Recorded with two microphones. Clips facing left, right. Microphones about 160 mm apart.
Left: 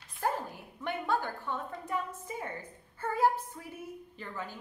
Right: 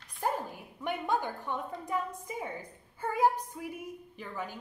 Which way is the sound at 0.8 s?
15° right (ahead or behind).